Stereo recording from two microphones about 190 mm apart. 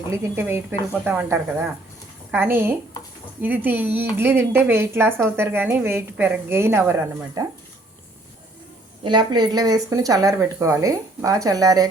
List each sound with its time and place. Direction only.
0.2 s a woman's voice: 10° right (ahead or behind)
7.4 s a sound: 20° right (ahead or behind)
9.0 s speech: 25° right (ahead or behind)